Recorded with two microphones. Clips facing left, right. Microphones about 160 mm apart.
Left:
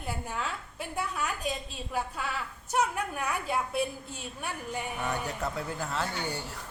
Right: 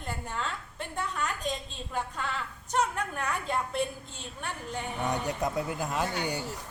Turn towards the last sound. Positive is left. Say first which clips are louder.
# right 2 dB
turn(degrees=-15)  # may be behind; listen again after turning